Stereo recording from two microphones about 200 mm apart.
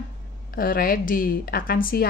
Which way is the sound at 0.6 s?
45° left (ahead or behind).